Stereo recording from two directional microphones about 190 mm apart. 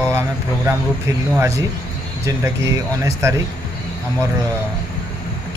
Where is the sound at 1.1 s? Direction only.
15° right (ahead or behind).